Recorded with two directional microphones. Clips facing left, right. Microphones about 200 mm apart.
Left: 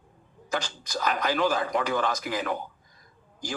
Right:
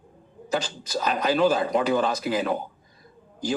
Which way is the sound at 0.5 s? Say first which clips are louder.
Right 4 dB; 20° right (ahead or behind).